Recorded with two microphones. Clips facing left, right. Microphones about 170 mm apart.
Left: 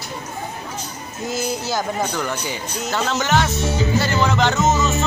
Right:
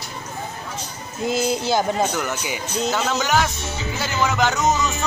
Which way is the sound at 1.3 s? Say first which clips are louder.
Right 3 dB; 25° right (ahead or behind).